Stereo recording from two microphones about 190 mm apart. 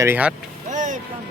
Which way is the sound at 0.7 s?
40° right (ahead or behind).